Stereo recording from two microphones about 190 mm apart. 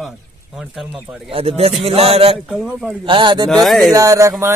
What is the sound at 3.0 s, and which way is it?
Speech, 25° right (ahead or behind).